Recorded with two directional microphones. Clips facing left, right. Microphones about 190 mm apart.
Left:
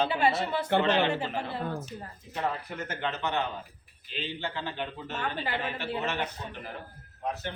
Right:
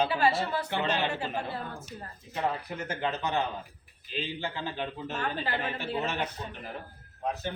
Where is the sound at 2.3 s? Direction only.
15° right (ahead or behind).